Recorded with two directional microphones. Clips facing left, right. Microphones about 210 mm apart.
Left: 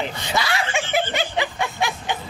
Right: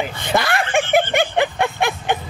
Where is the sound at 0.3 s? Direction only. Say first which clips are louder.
Right 6 dB; 55° right (ahead or behind).